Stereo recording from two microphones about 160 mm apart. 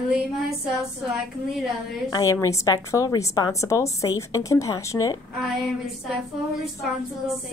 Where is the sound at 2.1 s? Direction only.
20° left (ahead or behind).